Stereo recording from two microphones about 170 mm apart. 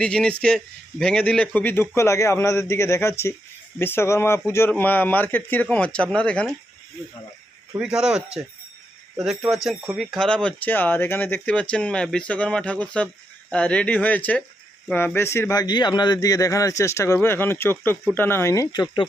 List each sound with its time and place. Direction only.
0.0 s speech: 5° left (ahead or behind)
7.8 s a man's voice: 5° right (ahead or behind); by 19.0 s 25° left (ahead or behind)